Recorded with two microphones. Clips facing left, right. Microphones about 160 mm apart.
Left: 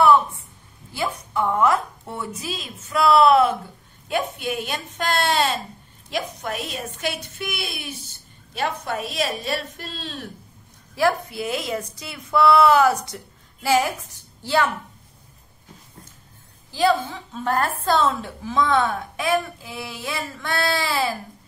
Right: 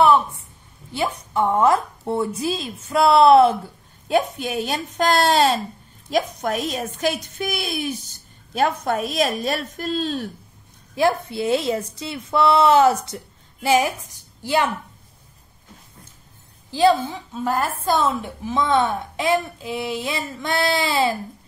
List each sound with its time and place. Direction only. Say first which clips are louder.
0.9 s a woman's voice: right 3 dB; 25° right (ahead or behind)
11.0 s a woman's voice: right 2 dB; 25° right (ahead or behind)
17.0 s a woman's voice: right 2 dB; 10° right (ahead or behind)